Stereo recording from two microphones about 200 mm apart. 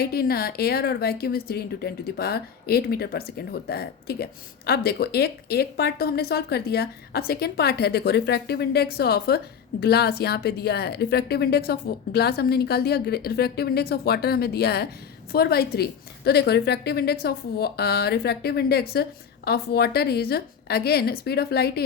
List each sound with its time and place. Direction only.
0.0 s a woman's voice: 50° left (ahead or behind)